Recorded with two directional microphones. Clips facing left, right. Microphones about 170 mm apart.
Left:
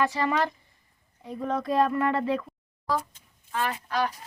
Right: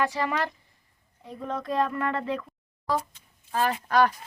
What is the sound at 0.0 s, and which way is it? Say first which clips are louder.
A woman's voice: left 2 dB; 5° right (ahead or behind).